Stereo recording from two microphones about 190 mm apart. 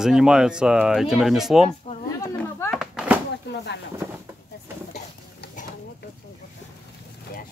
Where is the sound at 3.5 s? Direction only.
65° left (ahead or behind).